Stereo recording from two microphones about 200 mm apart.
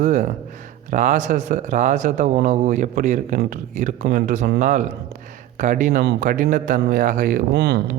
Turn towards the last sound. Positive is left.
turn(degrees=-55)  # may be behind; listen again after turning